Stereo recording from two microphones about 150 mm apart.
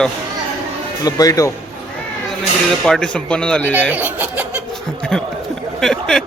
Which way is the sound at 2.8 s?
5° left (ahead or behind).